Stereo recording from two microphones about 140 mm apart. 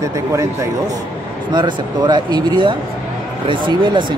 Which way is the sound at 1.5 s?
35° right (ahead or behind).